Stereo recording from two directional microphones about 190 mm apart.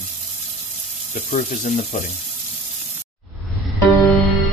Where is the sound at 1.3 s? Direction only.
35° left (ahead or behind).